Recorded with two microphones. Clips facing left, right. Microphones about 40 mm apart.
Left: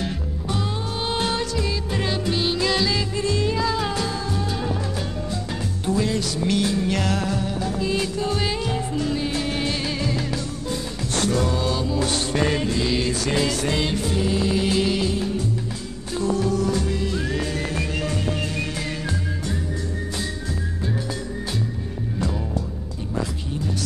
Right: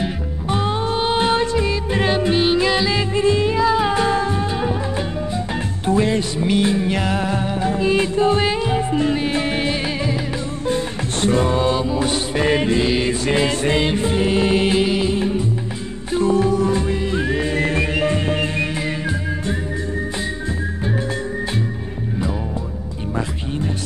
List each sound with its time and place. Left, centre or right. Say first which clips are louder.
0.5 s music: right 7 dB; right
5.9 s music: right 5 dB; right
10.7 s music: right 6 dB; right
12.5 s music: right 5 dB; right
14.8 s music: right 4 dB; right